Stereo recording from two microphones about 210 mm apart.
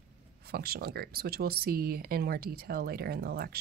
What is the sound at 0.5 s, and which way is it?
Speech, 45° right (ahead or behind).